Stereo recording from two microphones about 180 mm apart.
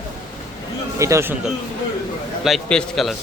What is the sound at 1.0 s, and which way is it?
Speech, 15° right (ahead or behind).